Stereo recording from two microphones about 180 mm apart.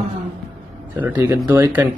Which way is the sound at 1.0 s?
10° right (ahead or behind).